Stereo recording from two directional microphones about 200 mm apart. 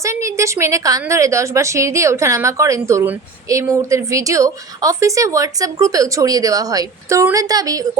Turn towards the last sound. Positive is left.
turn(degrees=-20)  # may be behind; listen again after turning